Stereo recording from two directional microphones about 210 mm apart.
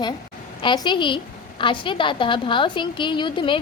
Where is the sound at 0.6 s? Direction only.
20° left (ahead or behind).